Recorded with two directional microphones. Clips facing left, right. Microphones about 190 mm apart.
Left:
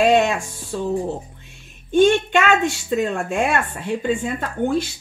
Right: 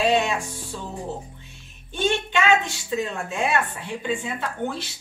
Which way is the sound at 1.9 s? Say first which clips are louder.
Left 10 dB; 50° left (ahead or behind).